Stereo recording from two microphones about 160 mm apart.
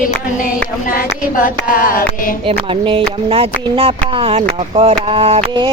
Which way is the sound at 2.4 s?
35° right (ahead or behind).